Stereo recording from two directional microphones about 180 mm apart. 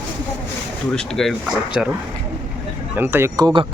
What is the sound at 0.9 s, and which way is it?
Speech, centre (ahead or behind).